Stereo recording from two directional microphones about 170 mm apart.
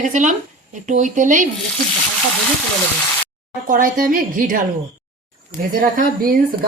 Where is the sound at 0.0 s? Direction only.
50° right (ahead or behind).